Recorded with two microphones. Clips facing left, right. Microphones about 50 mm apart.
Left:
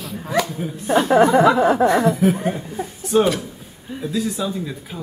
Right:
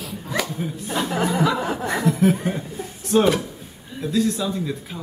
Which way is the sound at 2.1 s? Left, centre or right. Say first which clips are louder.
Left 1 dB; centre.